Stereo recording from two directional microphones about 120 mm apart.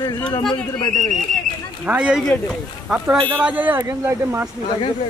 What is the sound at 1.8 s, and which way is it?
Speech, 10° right (ahead or behind).